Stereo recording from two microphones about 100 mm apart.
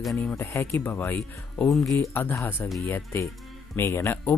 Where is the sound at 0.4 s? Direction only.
30° left (ahead or behind).